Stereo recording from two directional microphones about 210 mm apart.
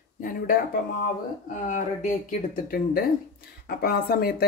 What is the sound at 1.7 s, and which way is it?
Speech, 40° left (ahead or behind).